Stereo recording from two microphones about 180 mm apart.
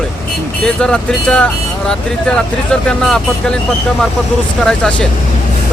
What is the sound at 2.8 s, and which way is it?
Speech, 5° left (ahead or behind).